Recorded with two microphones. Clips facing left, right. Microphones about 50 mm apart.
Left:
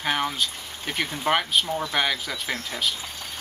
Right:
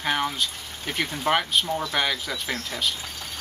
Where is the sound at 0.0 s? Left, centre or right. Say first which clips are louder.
Even; centre.